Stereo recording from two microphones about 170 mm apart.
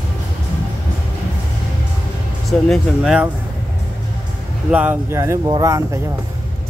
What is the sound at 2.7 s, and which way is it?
Speech, 5° right (ahead or behind).